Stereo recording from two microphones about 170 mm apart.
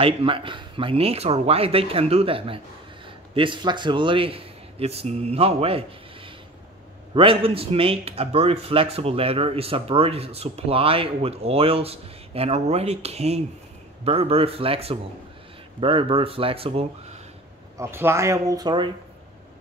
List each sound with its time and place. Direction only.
0.0 s speech: 30° right (ahead or behind)
7.2 s speech: 30° right (ahead or behind)
17.7 s speech: 15° right (ahead or behind)